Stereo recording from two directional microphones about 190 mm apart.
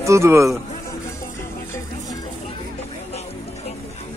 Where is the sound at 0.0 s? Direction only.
15° right (ahead or behind).